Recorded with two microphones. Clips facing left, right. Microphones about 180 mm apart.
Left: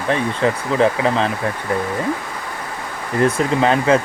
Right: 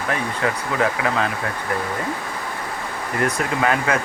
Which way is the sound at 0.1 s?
25° left (ahead or behind).